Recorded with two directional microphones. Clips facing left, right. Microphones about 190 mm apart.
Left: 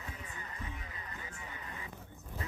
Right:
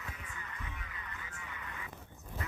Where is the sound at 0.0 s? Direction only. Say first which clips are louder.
Left 1 dB; 30° left (ahead or behind).